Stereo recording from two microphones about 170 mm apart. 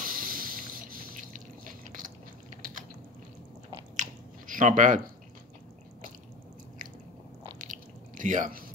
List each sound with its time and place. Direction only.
0.0 s liquid: 55° right (ahead or behind)
3.9 s chewing: 50° right (ahead or behind)
7.5 s a sound: 50° right (ahead or behind)